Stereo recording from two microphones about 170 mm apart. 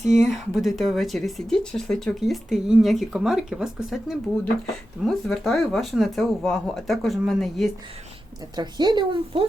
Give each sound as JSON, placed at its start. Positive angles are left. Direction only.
{"t": 0.0, "sound": "speech", "side_deg": -40}
{"t": 0.3, "sound": "speech", "side_deg": 0}
{"t": 8.5, "sound": "speech", "side_deg": -25}